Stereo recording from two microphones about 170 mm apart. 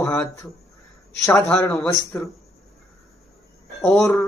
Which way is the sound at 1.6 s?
15° left (ahead or behind).